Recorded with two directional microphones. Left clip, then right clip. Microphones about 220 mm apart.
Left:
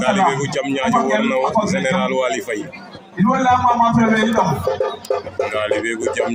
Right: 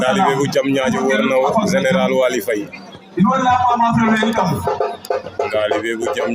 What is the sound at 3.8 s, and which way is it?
Speech, 50° right (ahead or behind).